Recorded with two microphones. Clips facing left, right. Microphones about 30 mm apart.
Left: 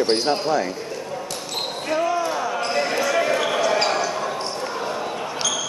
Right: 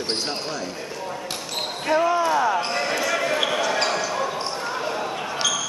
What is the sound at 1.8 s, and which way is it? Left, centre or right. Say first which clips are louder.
Speech: right 3 dB; centre.